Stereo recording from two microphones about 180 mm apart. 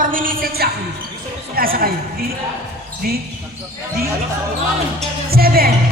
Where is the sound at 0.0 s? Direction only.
50° right (ahead or behind).